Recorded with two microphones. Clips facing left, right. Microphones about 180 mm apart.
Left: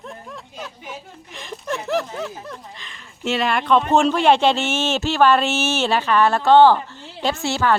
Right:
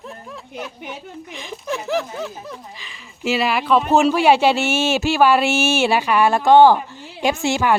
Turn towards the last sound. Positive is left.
turn(degrees=-15)  # may be behind; listen again after turning